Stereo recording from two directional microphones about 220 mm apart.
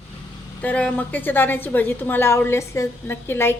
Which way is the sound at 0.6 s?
5° left (ahead or behind).